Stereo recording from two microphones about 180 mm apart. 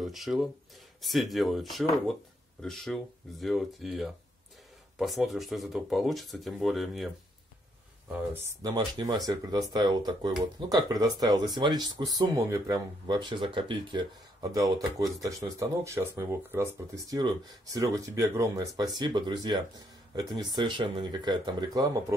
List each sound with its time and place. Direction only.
0.0 s speech: centre (ahead or behind)
8.1 s speech: 10° right (ahead or behind)